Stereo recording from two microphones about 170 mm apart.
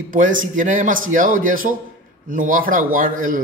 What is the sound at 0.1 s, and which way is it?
A man's voice, 50° right (ahead or behind).